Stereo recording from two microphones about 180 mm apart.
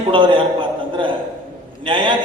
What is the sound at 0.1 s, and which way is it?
Speech, 25° right (ahead or behind).